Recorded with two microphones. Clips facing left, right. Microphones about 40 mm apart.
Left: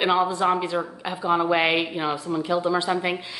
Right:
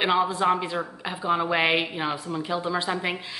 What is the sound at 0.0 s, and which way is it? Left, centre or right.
A woman's voice, centre.